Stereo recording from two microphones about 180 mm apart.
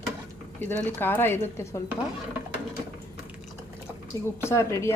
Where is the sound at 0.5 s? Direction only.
10° left (ahead or behind).